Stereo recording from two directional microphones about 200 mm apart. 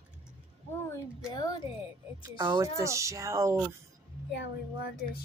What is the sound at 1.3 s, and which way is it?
Speech, 20° left (ahead or behind).